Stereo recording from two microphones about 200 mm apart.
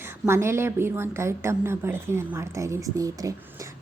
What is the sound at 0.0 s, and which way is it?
A woman's voice, 10° right (ahead or behind).